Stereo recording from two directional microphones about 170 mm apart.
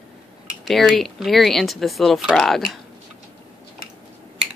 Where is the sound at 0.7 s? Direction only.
Centre (ahead or behind).